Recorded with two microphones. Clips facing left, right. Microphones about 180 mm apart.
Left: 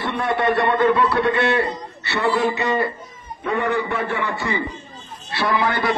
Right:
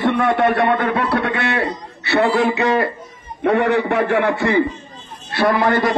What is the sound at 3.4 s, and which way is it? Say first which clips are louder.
A man's voice: right 6 dB; 75° right (ahead or behind).